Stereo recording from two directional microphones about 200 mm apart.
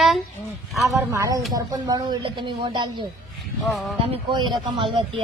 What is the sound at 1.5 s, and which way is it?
Speech, 20° right (ahead or behind).